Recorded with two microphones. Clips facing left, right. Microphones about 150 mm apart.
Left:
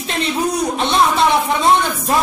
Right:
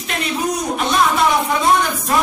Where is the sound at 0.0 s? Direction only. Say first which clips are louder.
Left 2 dB; 30° left (ahead or behind).